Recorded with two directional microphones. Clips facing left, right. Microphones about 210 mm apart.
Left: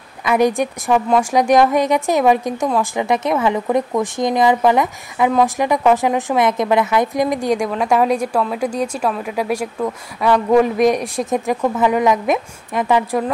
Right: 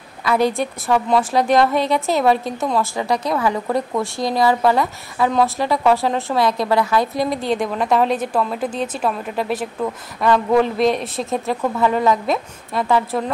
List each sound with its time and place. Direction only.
0.2 s a woman's voice: 15° left (ahead or behind)